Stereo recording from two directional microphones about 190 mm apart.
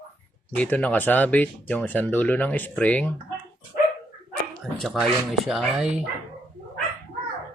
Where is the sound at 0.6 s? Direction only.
5° left (ahead or behind).